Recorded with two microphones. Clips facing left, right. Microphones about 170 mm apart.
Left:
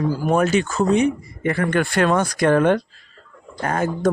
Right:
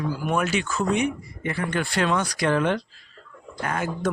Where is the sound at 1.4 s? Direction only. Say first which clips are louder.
Left 7 dB; 55° left (ahead or behind).